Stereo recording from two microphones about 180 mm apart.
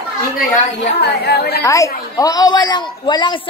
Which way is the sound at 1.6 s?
20° left (ahead or behind).